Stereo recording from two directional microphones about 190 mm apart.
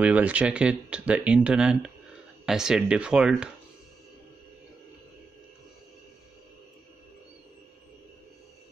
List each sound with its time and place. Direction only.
0.0 s speech: 5° right (ahead or behind)